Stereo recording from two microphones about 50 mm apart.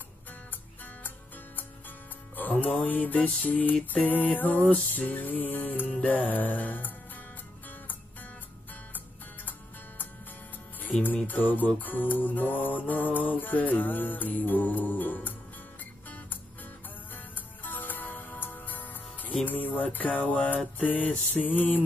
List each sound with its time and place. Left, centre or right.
2.3 s music: left
10.8 s music: left
17.6 s music: left